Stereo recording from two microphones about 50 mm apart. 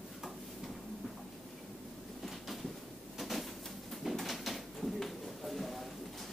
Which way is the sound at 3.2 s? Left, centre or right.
Centre.